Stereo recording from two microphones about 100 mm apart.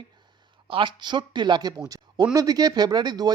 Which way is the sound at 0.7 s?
55° right (ahead or behind).